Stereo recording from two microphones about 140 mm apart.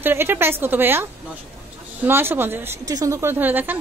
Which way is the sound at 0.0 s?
15° right (ahead or behind).